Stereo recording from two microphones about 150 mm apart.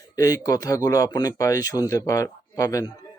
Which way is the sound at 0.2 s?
25° left (ahead or behind).